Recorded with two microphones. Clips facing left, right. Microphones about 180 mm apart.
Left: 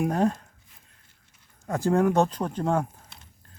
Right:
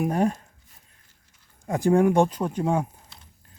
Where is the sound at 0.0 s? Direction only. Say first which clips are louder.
Right 1 dB; 10° right (ahead or behind).